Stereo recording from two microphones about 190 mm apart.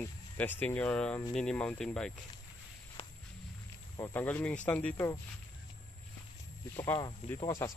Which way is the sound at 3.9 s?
10° left (ahead or behind).